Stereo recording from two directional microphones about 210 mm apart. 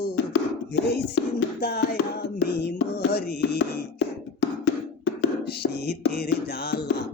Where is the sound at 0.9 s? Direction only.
50° left (ahead or behind).